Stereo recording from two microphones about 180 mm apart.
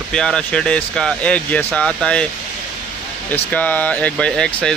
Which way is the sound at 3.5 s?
10° left (ahead or behind).